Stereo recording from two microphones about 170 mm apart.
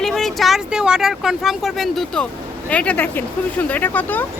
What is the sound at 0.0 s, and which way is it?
Vehicle, centre (ahead or behind).